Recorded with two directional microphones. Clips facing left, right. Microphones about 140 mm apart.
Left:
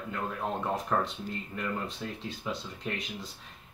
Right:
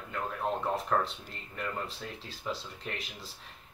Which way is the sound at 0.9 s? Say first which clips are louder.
Even; 5° left (ahead or behind).